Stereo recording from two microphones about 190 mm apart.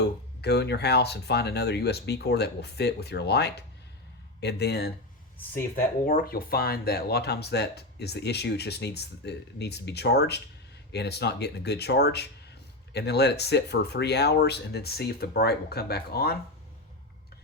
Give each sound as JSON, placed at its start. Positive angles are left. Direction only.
{"t": 0.0, "sound": "speech", "side_deg": 60}